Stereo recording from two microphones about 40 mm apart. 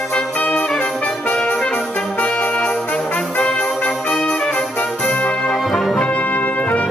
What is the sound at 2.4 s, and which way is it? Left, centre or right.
Brass instrument, left.